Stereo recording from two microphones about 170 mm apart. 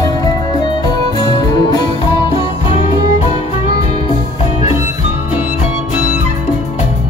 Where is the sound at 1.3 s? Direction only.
25° left (ahead or behind).